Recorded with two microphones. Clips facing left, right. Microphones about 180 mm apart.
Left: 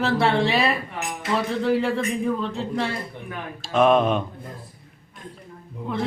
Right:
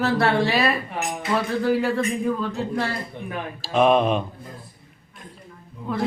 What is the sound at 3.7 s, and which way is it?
Speech, centre (ahead or behind).